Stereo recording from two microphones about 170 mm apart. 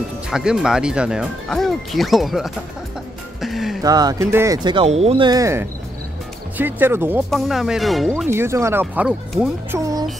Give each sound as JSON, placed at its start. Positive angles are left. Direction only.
{"t": 0.3, "sound": "speech", "side_deg": -5}
{"t": 3.3, "sound": "music", "side_deg": 0}
{"t": 3.8, "sound": "speech", "side_deg": -20}
{"t": 4.6, "sound": "speech", "side_deg": -35}
{"t": 7.2, "sound": "speech", "side_deg": 0}
{"t": 8.3, "sound": "speech", "side_deg": -15}